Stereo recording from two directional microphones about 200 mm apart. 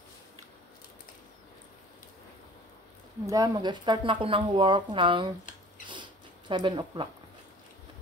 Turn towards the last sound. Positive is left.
turn(degrees=-25)  # may be behind; listen again after turning